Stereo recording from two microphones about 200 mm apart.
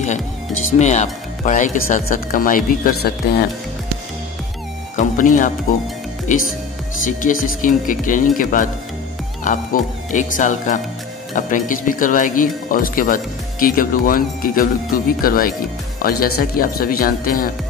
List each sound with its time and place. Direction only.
0.7 s speech: 35° left (ahead or behind)
4.9 s speech: 40° left (ahead or behind)
7.1 s speech: 40° left (ahead or behind)